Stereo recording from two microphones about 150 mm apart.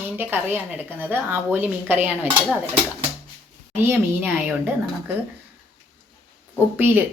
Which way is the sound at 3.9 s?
10° right (ahead or behind).